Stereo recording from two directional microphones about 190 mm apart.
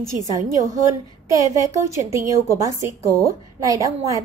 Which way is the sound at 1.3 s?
15° right (ahead or behind).